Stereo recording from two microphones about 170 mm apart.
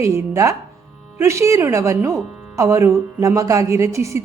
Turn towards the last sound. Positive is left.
turn(degrees=-15)  # may be behind; listen again after turning